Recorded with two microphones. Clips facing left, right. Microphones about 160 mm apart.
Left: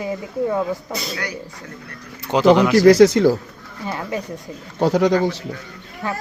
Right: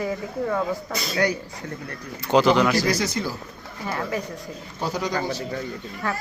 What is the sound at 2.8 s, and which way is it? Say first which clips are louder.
Speech: left 14 dB; 75° left (ahead or behind).